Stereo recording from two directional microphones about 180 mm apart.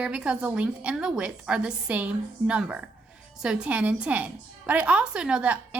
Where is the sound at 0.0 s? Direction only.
5° right (ahead or behind).